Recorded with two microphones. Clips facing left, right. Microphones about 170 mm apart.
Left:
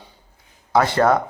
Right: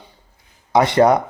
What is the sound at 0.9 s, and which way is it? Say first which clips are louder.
Speech: right 5 dB; 15° right (ahead or behind).